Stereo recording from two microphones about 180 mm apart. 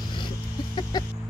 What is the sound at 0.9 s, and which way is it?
Music, 20° left (ahead or behind).